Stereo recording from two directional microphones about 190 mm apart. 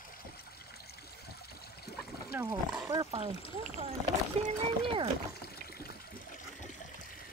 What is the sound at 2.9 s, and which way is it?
Speech, 20° right (ahead or behind).